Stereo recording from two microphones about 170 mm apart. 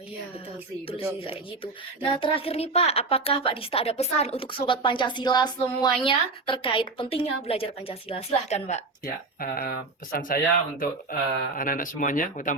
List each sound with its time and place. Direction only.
0.9 s a woman's voice: 30° left (ahead or behind)
9.0 s speech: 60° left (ahead or behind)